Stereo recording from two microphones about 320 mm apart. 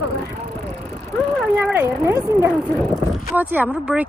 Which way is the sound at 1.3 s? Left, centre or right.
Centre.